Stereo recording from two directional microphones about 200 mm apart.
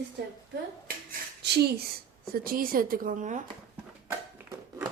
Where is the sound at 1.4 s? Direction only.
55° right (ahead or behind); by 3.4 s 40° right (ahead or behind).